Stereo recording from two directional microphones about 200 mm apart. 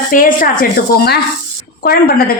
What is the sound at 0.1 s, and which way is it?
A woman's voice, 45° left (ahead or behind).